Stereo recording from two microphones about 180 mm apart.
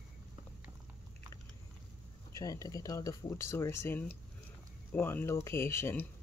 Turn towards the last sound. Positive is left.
turn(degrees=15)  # may be behind; listen again after turning